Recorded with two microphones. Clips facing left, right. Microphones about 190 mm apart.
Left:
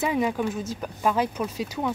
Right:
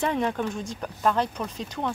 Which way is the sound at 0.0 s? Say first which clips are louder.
Left 1 dB; 5° left (ahead or behind).